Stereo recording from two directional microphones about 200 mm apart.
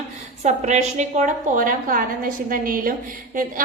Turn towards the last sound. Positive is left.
turn(degrees=-45)  # may be behind; listen again after turning